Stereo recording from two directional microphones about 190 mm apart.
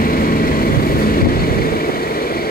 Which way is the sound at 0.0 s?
50° left (ahead or behind).